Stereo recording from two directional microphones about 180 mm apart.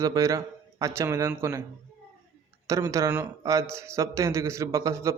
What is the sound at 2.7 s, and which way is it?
A man's voice, 15° right (ahead or behind).